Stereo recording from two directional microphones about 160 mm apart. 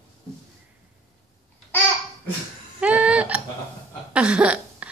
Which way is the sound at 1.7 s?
10° left (ahead or behind).